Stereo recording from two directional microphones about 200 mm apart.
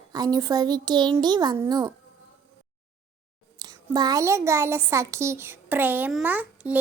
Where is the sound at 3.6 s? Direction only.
20° right (ahead or behind).